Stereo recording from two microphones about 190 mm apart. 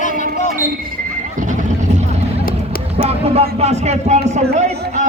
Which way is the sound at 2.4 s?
50° left (ahead or behind).